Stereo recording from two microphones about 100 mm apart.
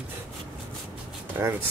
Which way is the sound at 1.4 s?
25° right (ahead or behind).